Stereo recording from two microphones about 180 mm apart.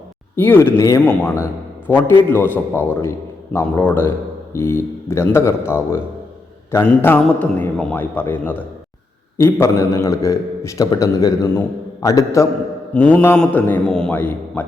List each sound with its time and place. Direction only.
0.3 s a man's voice: 10° left (ahead or behind)